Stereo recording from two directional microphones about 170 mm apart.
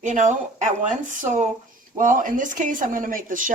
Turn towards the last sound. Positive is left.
turn(degrees=-50)  # may be behind; listen again after turning